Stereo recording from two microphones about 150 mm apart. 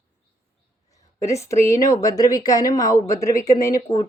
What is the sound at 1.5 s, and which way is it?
A woman's voice, 20° left (ahead or behind).